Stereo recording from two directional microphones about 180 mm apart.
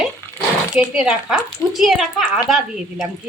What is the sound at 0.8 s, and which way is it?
Speech, 5° right (ahead or behind).